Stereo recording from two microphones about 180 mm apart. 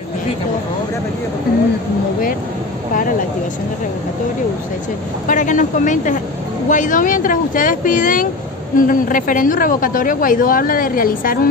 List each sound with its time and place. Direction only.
5.3 s a woman's voice: 45° left (ahead or behind)